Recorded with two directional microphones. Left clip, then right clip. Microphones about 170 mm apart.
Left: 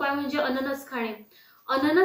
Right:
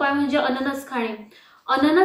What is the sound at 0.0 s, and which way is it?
A woman's voice, 15° right (ahead or behind).